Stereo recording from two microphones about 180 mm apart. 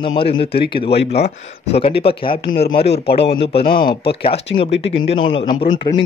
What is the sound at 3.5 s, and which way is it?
Speech, 60° left (ahead or behind).